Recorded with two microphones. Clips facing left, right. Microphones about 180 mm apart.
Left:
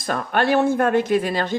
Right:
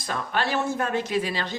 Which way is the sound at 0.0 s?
55° left (ahead or behind).